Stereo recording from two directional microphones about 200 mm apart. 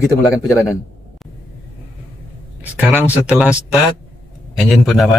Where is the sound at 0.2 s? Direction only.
15° left (ahead or behind).